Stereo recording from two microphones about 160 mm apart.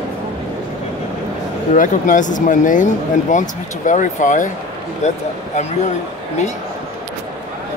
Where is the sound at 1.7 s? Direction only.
55° left (ahead or behind).